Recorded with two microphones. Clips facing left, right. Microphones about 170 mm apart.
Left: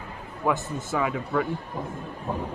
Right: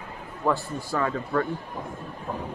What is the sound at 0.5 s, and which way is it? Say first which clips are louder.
Speech: even; 20° left (ahead or behind).